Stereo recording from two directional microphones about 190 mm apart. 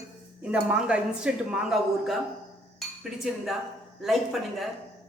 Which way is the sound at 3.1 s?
5° right (ahead or behind).